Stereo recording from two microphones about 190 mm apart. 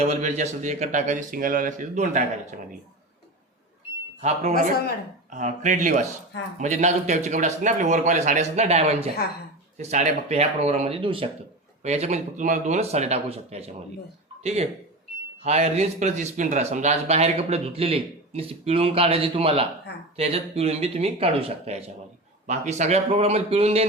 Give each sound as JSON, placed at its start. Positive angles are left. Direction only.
{"t": 0.0, "sound": "speech", "side_deg": -35}
{"t": 4.2, "sound": "speech", "side_deg": -35}